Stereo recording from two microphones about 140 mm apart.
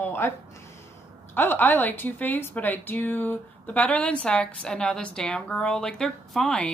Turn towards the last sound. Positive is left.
turn(degrees=5)  # may be behind; listen again after turning